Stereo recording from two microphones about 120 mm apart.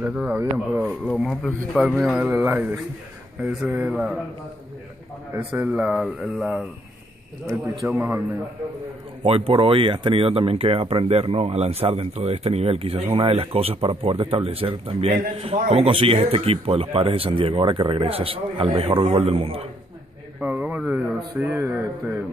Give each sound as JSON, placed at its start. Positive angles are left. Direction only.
{"t": 0.0, "sound": "a man's voice", "side_deg": -10}
{"t": 0.8, "sound": "a man's voice", "side_deg": 0}
{"t": 5.5, "sound": "a man's voice", "side_deg": -10}
{"t": 7.8, "sound": "a man's voice", "side_deg": -15}
{"t": 9.2, "sound": "speech", "side_deg": -50}
{"t": 20.3, "sound": "a man's voice", "side_deg": -10}